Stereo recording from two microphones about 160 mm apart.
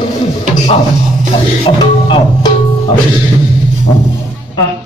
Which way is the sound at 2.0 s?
35° left (ahead or behind).